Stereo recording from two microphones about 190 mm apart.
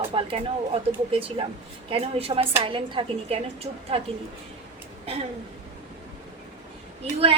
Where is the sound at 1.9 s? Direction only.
30° right (ahead or behind).